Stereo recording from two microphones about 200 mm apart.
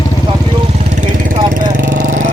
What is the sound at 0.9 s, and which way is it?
Vehicle, 40° right (ahead or behind).